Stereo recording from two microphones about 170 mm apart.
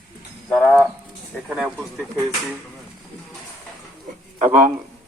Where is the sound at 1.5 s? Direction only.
5° right (ahead or behind).